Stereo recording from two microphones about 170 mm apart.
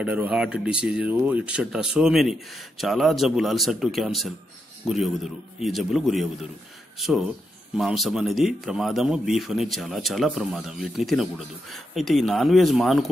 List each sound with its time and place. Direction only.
0.0 s a man's voice: 5° right (ahead or behind)